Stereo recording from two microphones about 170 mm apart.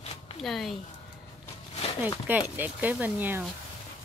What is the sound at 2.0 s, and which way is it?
Speech, 10° right (ahead or behind).